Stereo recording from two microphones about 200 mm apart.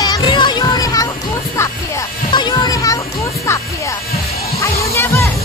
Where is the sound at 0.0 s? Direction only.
20° left (ahead or behind).